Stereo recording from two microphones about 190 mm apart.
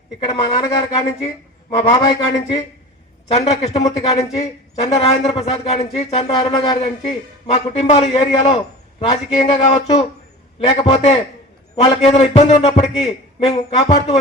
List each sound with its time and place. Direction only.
0.2 s a man's voice: 25° left (ahead or behind)
0.6 s a man's voice: 15° left (ahead or behind); by 13.8 s 30° left (ahead or behind)